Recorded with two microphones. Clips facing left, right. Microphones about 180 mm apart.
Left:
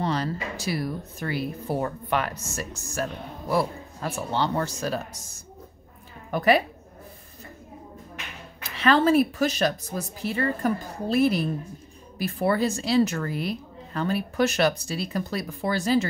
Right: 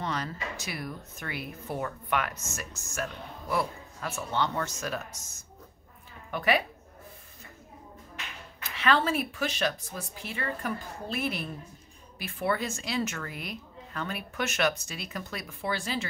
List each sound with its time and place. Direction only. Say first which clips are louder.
0.0 s speech: left 7 dB; 35° left (ahead or behind)
6.3 s speech: left 6 dB; 40° left (ahead or behind)
8.6 s speech: left 6 dB; 35° left (ahead or behind)